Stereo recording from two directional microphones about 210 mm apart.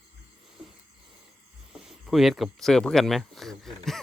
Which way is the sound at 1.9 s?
Centre (ahead or behind).